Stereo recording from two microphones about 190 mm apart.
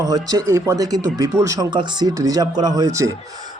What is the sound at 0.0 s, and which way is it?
A man's voice, 20° right (ahead or behind).